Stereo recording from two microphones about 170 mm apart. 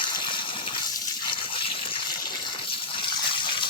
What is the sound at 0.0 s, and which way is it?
Water, 30° left (ahead or behind).